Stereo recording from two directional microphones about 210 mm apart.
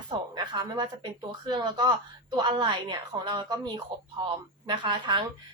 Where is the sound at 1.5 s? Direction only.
20° right (ahead or behind).